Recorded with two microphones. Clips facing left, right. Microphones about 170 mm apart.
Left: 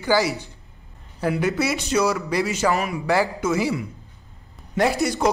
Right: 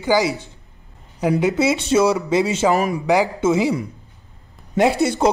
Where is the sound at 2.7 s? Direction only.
40° right (ahead or behind).